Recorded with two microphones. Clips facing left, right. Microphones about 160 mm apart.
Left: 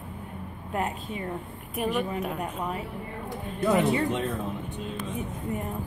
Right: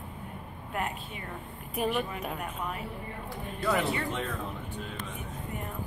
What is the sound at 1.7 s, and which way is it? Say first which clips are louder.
Speech: left 2 dB; centre (ahead or behind).